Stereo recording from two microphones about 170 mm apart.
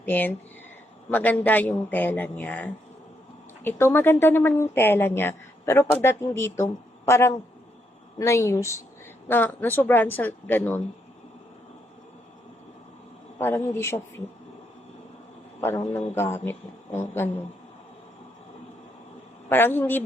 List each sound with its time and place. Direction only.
0.0 s a woman's voice: 10° left (ahead or behind)
13.4 s a woman's voice: 15° left (ahead or behind)
15.6 s a woman's voice: 15° left (ahead or behind)
19.5 s a woman's voice: 10° left (ahead or behind)